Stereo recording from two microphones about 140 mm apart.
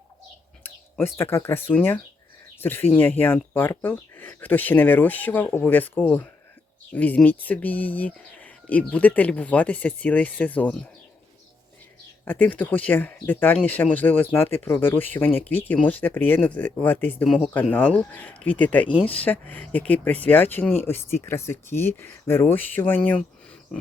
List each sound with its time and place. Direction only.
0.6 s speech: 15° left (ahead or behind)
12.2 s speech: 10° left (ahead or behind)
17.2 s speech: centre (ahead or behind)
17.5 s speech: 10° left (ahead or behind)